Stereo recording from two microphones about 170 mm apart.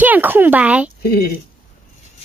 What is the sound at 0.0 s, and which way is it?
Speech, 10° right (ahead or behind).